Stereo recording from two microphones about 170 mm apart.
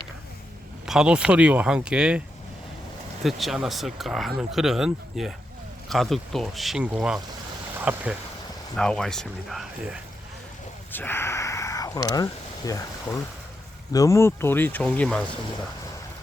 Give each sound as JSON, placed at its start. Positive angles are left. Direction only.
{"t": 0.9, "sound": "speech", "side_deg": -5}
{"t": 3.2, "sound": "speech", "side_deg": 0}
{"t": 8.7, "sound": "speech", "side_deg": 5}
{"t": 10.9, "sound": "speech", "side_deg": 10}